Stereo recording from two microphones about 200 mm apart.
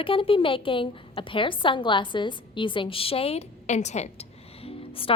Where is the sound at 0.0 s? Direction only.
25° left (ahead or behind).